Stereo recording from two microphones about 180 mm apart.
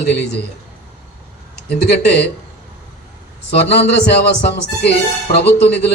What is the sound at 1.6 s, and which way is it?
Speech, 65° left (ahead or behind).